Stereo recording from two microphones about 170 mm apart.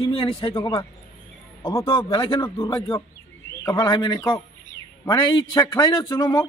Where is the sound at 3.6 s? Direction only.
20° left (ahead or behind).